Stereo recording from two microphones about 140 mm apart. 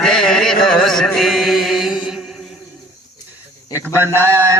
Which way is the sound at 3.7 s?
15° right (ahead or behind).